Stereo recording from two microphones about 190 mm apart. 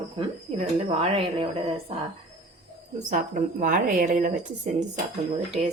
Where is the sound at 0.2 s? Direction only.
30° right (ahead or behind).